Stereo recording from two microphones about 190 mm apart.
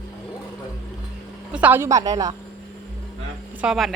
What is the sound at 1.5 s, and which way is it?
Speech, 10° right (ahead or behind).